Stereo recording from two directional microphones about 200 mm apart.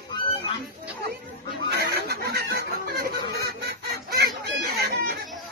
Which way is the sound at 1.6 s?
50° right (ahead or behind).